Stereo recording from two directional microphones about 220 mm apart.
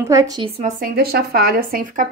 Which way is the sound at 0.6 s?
40° right (ahead or behind).